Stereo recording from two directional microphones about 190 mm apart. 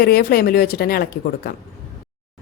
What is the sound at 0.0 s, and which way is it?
Speech, 55° left (ahead or behind).